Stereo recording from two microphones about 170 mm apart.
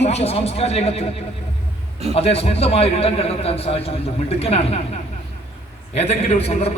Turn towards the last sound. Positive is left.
turn(degrees=35)  # may be behind; listen again after turning